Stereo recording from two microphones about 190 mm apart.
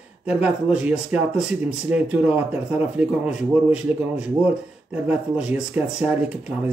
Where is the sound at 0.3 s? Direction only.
5° right (ahead or behind).